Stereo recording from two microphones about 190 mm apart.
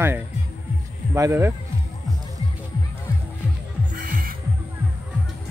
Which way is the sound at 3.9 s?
45° right (ahead or behind).